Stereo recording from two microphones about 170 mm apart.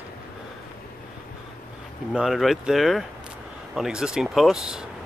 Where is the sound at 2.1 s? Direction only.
Centre (ahead or behind).